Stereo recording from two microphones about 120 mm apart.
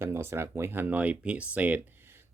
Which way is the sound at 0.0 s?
20° right (ahead or behind).